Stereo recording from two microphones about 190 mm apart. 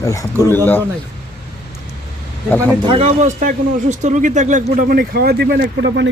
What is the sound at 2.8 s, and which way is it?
A man's voice, 35° right (ahead or behind).